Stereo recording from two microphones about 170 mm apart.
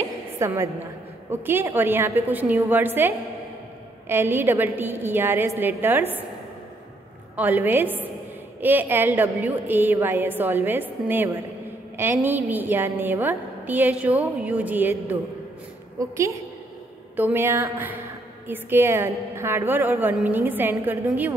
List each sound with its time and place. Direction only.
0.4 s a woman's voice: 15° right (ahead or behind)
7.3 s a woman's voice: 10° right (ahead or behind)